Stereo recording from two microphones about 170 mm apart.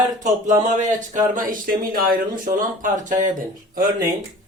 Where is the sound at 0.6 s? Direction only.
45° right (ahead or behind).